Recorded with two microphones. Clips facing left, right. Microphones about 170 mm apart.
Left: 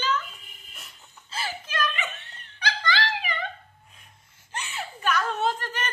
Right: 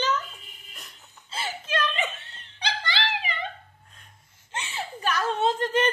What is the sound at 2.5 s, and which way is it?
Dog, 30° right (ahead or behind).